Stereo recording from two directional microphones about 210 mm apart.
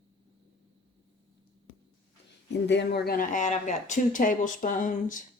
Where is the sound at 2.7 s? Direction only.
55° left (ahead or behind).